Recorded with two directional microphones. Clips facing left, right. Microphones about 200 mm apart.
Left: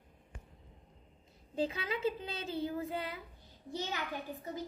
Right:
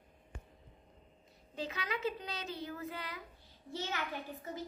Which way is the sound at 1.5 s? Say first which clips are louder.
Left 5 dB; 30° left (ahead or behind).